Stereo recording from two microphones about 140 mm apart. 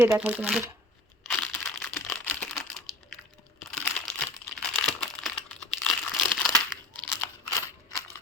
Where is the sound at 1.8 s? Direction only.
10° left (ahead or behind).